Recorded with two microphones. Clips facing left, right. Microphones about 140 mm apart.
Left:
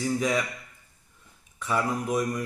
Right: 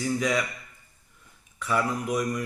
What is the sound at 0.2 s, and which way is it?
Speech, 35° left (ahead or behind).